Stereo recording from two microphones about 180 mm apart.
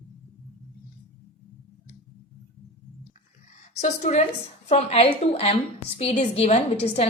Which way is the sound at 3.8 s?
40° left (ahead or behind).